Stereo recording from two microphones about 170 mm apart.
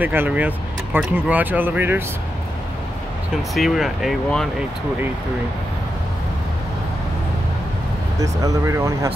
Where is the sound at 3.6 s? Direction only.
Centre (ahead or behind).